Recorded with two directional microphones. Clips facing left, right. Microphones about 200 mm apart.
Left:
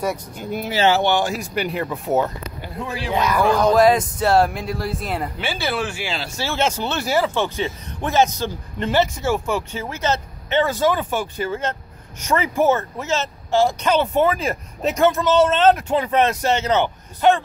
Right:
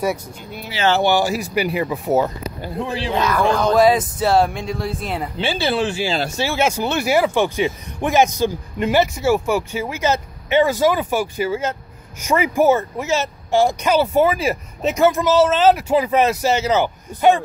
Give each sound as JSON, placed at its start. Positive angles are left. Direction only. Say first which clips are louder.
{"t": 0.4, "sound": "speech", "louder": "left 7 dB", "side_deg": 45}
{"t": 1.0, "sound": "speech", "louder": "right 2 dB", "side_deg": -5}
{"t": 2.8, "sound": "speech", "louder": "right 4 dB", "side_deg": -30}
{"t": 3.2, "sound": "speech", "louder": "left 1 dB", "side_deg": 10}
{"t": 5.4, "sound": "speech", "louder": "right 8 dB", "side_deg": -25}
{"t": 6.3, "sound": "speech", "louder": "right 3 dB", "side_deg": -10}